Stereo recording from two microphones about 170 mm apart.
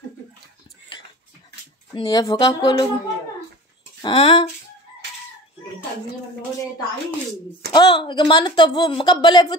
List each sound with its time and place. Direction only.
2.0 s a woman's voice: 25° left (ahead or behind)
4.0 s a woman's voice: 30° left (ahead or behind)
7.7 s a woman's voice: 25° left (ahead or behind)